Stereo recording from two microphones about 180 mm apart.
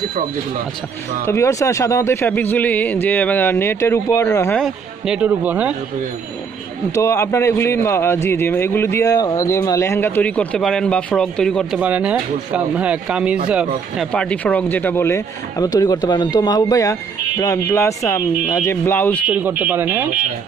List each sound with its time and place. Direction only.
1.2 s a man's voice: 15° left (ahead or behind)
4.6 s speech: centre (ahead or behind)
7.0 s a man's voice: 15° left (ahead or behind)
11.8 s speech: 10° right (ahead or behind)
13.9 s a man's voice: 5° left (ahead or behind)
19.2 s speech: 10° right (ahead or behind)